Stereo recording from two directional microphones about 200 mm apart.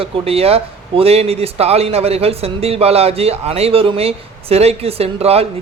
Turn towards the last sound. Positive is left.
turn(degrees=-30)  # may be behind; listen again after turning